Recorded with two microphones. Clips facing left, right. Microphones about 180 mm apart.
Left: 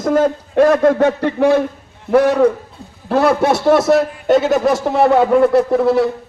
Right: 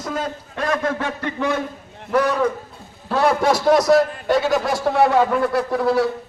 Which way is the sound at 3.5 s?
25° left (ahead or behind).